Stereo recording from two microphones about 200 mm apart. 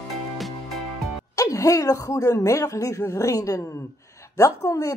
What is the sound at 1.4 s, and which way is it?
Speech, 15° left (ahead or behind).